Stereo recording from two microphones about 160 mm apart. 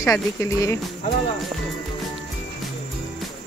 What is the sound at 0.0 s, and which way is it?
Speech, 20° left (ahead or behind).